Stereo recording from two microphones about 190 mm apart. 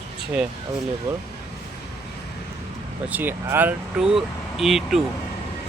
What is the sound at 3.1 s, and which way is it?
Speech, 10° right (ahead or behind).